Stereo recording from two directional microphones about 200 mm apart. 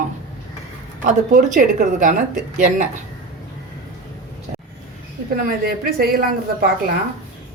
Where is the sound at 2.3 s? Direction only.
5° right (ahead or behind).